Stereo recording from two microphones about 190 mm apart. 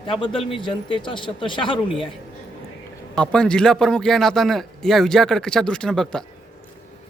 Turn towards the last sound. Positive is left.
turn(degrees=5)  # may be behind; listen again after turning